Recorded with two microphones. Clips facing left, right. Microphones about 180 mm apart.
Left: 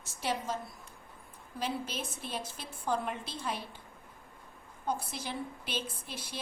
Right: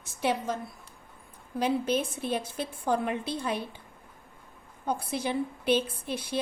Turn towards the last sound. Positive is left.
turn(degrees=-60)  # may be behind; listen again after turning